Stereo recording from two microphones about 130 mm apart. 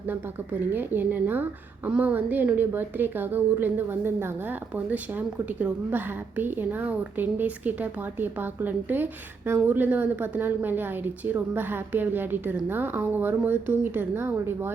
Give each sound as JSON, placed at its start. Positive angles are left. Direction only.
{"t": 0.7, "sound": "a woman's voice", "side_deg": -15}